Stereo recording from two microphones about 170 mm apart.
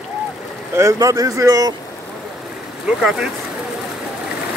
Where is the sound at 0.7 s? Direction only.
20° right (ahead or behind).